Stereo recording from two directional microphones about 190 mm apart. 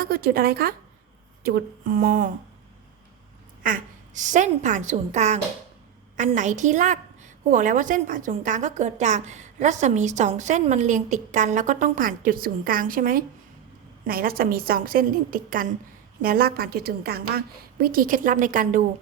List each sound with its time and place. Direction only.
0.0 s a woman's voice: 50° right (ahead or behind)
3.6 s a woman's voice: 45° right (ahead or behind)